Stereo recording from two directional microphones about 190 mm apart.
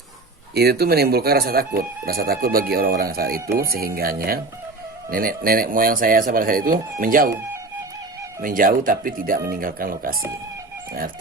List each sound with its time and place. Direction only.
0.5 s speech: 55° right (ahead or behind)
8.4 s speech: 45° right (ahead or behind)